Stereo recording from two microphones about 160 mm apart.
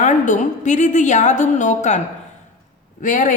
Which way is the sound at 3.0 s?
50° left (ahead or behind).